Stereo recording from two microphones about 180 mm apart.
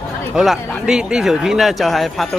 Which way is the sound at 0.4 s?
5° right (ahead or behind).